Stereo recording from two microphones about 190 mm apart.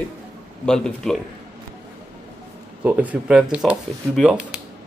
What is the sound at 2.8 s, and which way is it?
Speech, 10° right (ahead or behind).